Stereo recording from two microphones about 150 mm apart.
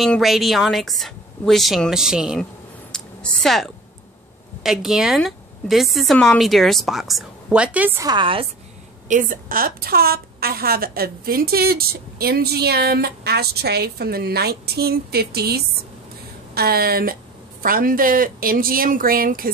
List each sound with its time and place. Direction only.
0.0 s speech: centre (ahead or behind)
2.9 s a sound: 5° left (ahead or behind)
4.6 s speech: 5° right (ahead or behind)
8.0 s a woman's voice: 30° right (ahead or behind)
9.1 s a woman's voice: 70° right (ahead or behind)